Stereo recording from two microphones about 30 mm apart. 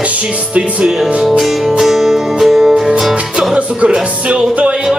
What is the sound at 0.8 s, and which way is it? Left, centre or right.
Music, centre.